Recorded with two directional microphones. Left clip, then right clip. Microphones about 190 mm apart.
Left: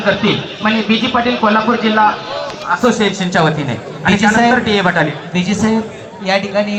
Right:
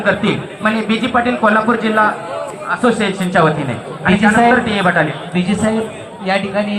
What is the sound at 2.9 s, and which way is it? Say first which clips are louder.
A man's voice: even; 60° left (ahead or behind).